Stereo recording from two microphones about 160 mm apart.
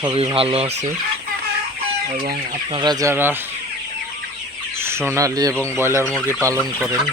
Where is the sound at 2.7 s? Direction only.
25° right (ahead or behind).